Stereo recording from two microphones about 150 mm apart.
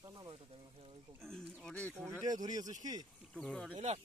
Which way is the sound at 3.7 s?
45° right (ahead or behind).